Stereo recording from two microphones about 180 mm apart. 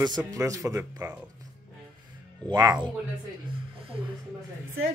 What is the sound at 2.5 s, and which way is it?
Speech, 20° right (ahead or behind).